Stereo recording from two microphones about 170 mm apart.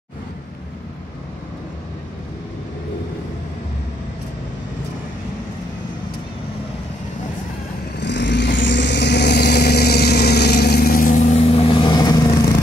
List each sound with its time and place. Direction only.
8.0 s vehicle: 90° left; by 12.2 s 25° left (ahead or behind)